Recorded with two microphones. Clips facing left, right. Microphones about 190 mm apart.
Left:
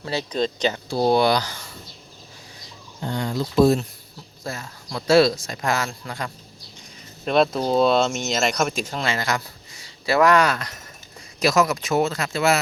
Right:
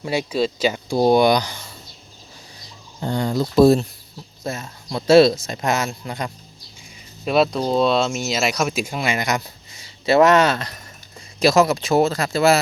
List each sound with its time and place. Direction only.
0.0 s speech: 15° right (ahead or behind)
3.0 s speech: 35° right (ahead or behind)
4.4 s speech: 20° right (ahead or behind)
7.3 s speech: 5° right (ahead or behind); by 12.5 s 35° right (ahead or behind)